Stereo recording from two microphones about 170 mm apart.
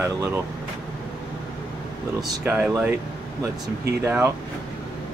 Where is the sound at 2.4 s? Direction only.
10° right (ahead or behind).